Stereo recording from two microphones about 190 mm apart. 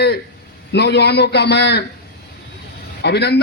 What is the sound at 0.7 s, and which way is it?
Speech, 60° left (ahead or behind).